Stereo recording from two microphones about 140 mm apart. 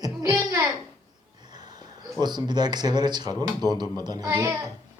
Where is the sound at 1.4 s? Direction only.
30° right (ahead or behind).